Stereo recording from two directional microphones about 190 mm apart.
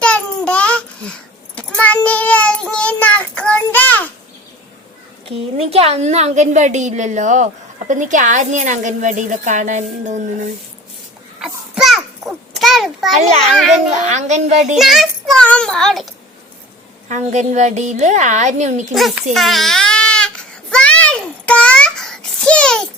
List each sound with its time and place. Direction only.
0.0 s babbling: 5° left (ahead or behind)
5.5 s a woman's voice: 30° right (ahead or behind)
11.3 s a sound: centre (ahead or behind)
13.1 s a woman's voice: 35° right (ahead or behind)
14.8 s a child's voice: centre (ahead or behind)
17.1 s a woman's voice: 40° right (ahead or behind)
18.9 s a child's voice: centre (ahead or behind)
19.3 s a sound: centre (ahead or behind)